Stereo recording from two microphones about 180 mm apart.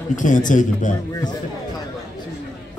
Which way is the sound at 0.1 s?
45° left (ahead or behind).